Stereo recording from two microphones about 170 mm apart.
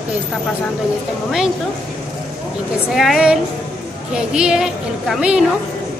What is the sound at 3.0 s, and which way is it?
A woman's voice, centre (ahead or behind).